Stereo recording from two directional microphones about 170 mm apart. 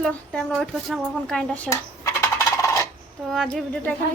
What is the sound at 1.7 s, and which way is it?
Coin, 15° left (ahead or behind).